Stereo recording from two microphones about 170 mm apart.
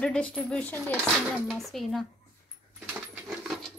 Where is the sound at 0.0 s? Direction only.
5° left (ahead or behind).